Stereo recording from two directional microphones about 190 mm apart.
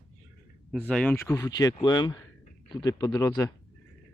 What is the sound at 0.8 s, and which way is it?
Speech, 5° left (ahead or behind).